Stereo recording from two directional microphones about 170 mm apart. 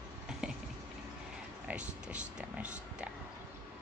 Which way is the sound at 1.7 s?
5° right (ahead or behind).